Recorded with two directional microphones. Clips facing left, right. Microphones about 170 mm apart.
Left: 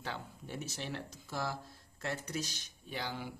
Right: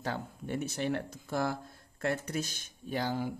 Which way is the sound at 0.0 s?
50° right (ahead or behind).